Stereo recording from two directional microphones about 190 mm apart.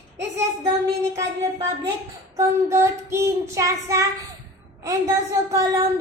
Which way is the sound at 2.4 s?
15° right (ahead or behind).